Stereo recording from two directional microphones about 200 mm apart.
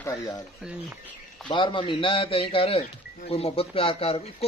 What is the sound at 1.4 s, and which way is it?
Speech, 25° left (ahead or behind).